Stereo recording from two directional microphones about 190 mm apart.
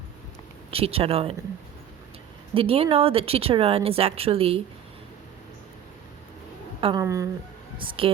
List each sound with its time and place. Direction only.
0.7 s speech: 30° right (ahead or behind)
2.6 s speech: 30° right (ahead or behind)
6.8 s speech: 20° right (ahead or behind)
7.8 s speech: 30° right (ahead or behind)